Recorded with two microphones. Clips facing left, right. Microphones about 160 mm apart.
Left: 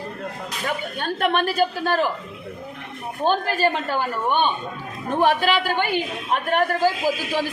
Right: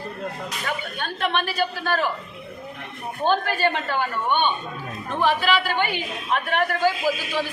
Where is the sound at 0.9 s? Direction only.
45° left (ahead or behind).